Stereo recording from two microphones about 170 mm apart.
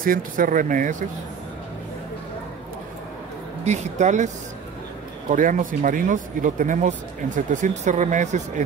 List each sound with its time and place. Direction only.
0.0 s speech: 55° right (ahead or behind)
3.6 s speech: 45° right (ahead or behind)
5.3 s speech: 50° right (ahead or behind)